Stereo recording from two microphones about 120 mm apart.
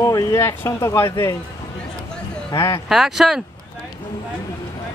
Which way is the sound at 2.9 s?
5° right (ahead or behind).